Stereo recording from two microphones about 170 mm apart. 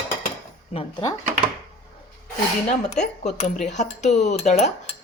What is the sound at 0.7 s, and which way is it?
Speech, 35° left (ahead or behind).